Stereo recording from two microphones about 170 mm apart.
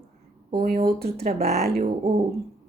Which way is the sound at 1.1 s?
40° right (ahead or behind).